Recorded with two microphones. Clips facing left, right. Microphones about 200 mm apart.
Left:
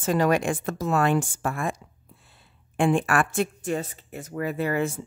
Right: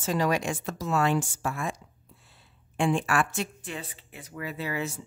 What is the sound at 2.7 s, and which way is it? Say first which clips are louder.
Speech: left 4 dB; 55° left (ahead or behind).